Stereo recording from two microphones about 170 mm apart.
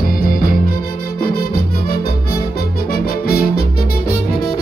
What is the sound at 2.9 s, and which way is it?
Music, 65° left (ahead or behind).